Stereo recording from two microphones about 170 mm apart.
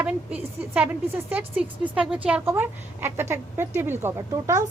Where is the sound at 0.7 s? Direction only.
10° right (ahead or behind).